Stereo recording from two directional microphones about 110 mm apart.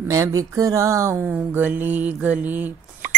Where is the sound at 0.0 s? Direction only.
30° right (ahead or behind).